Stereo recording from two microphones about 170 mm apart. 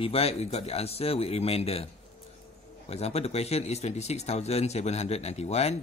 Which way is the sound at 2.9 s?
40° left (ahead or behind).